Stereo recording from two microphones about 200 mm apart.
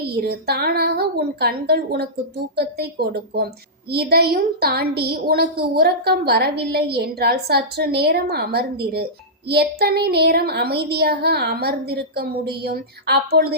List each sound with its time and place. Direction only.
0.2 s a woman's voice: 50° right (ahead or behind)